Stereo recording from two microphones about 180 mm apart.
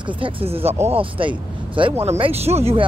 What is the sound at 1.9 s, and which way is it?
Speech, 15° right (ahead or behind).